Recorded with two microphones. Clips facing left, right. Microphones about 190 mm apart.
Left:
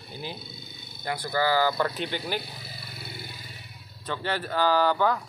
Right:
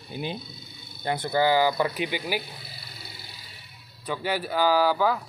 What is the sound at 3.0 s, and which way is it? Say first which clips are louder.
Vehicle: left 5 dB; 55° left (ahead or behind).